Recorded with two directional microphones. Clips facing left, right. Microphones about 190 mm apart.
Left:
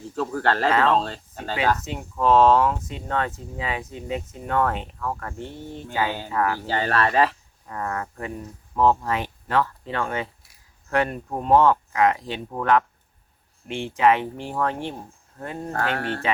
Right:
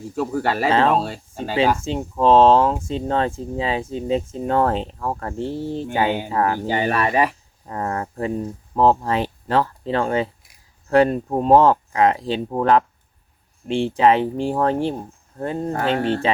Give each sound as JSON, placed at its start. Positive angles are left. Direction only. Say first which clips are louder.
{"t": 0.1, "sound": "speech", "louder": "right 2 dB", "side_deg": -10}
{"t": 1.8, "sound": "speech", "louder": "right 5 dB", "side_deg": -30}
{"t": 5.9, "sound": "speech", "louder": "right 4 dB", "side_deg": -20}
{"t": 6.3, "sound": "speech", "louder": "even", "side_deg": -30}
{"t": 6.7, "sound": "speech", "louder": "right 3 dB", "side_deg": -15}
{"t": 7.7, "sound": "speech", "louder": "right 4 dB", "side_deg": -30}
{"t": 15.7, "sound": "speech", "louder": "right 5 dB", "side_deg": -20}